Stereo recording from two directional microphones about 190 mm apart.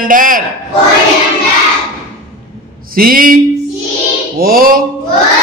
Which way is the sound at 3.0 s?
50° right (ahead or behind).